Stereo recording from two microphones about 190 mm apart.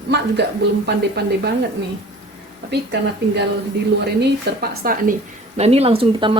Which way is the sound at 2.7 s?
60° right (ahead or behind).